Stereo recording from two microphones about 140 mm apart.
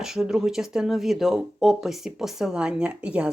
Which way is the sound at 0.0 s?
5° right (ahead or behind).